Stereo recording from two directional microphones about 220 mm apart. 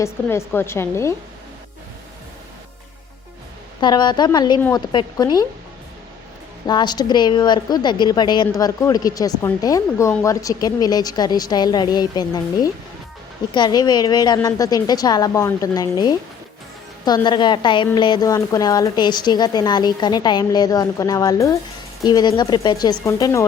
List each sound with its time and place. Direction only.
0.0 s a woman's voice: 10° left (ahead or behind)
3.8 s a woman's voice: 20° left (ahead or behind)
6.7 s a woman's voice: 20° left (ahead or behind)